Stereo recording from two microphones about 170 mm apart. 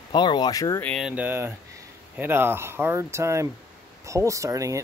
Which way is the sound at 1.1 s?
10° right (ahead or behind).